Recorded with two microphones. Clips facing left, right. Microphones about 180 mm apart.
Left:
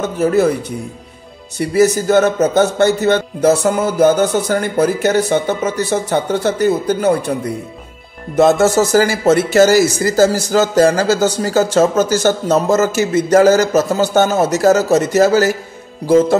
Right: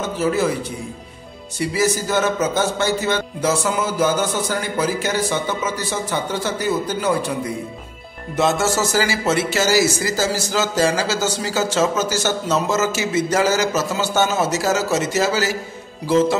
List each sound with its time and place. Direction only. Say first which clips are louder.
0.2 s music: left 6 dB; 60° left (ahead or behind)
1.6 s music: left 7 dB; 55° left (ahead or behind)
8.4 s speech: left 8 dB; 55° left (ahead or behind)
13.8 s music: left 6 dB; 50° left (ahead or behind)
16.1 s speech: left 5 dB; 50° left (ahead or behind)